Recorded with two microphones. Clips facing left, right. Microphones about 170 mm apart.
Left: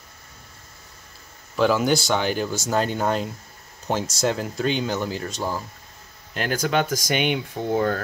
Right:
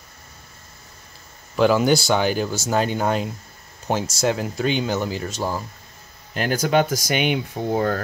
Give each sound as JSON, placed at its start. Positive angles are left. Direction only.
{"t": 1.6, "sound": "speech", "side_deg": 0}